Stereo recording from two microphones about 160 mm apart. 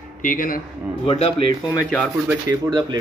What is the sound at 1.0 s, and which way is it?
Speech, 35° left (ahead or behind).